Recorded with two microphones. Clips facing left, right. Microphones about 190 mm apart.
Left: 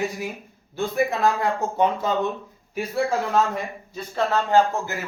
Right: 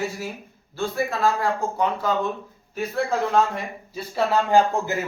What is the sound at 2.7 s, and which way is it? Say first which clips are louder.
Speech: left 1 dB; 10° left (ahead or behind).